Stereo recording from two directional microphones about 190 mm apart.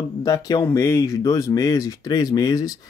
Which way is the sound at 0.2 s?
20° left (ahead or behind).